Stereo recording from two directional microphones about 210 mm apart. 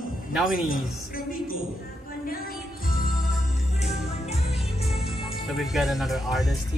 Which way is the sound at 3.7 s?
30° left (ahead or behind).